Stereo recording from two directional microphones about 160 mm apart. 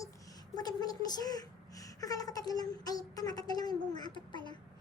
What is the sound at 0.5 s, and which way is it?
Speech, 25° left (ahead or behind).